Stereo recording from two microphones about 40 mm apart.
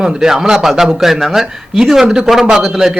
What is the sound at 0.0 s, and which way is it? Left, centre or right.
A man's voice, centre.